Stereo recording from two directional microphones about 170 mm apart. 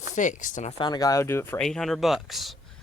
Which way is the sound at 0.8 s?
25° left (ahead or behind).